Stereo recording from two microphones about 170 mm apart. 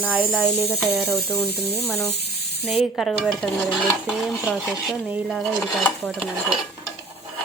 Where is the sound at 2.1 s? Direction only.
75° left (ahead or behind).